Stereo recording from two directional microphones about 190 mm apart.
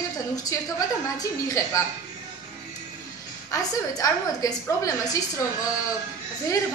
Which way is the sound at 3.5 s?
15° left (ahead or behind).